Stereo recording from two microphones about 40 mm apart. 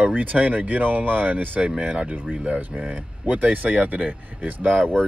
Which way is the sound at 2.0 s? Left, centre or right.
Right.